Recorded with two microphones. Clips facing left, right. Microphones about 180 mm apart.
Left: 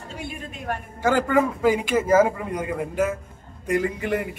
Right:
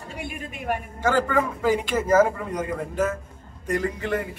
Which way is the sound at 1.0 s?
10° left (ahead or behind).